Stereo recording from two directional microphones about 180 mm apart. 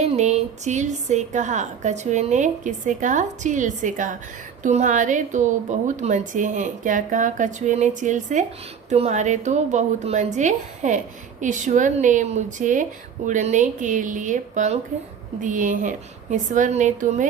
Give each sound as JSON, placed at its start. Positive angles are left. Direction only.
{"t": 0.0, "sound": "a woman's voice", "side_deg": -40}